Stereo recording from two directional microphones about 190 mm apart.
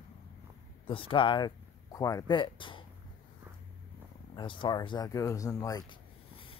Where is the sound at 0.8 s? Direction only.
30° left (ahead or behind).